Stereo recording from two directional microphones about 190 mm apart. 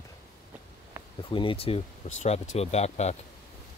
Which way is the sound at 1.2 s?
25° left (ahead or behind).